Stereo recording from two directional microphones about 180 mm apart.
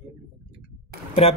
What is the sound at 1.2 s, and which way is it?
Speech, 35° left (ahead or behind).